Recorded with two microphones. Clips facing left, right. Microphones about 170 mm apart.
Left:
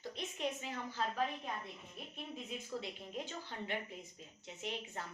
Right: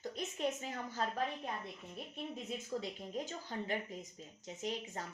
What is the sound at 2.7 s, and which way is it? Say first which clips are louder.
Speech: right 3 dB; 40° right (ahead or behind).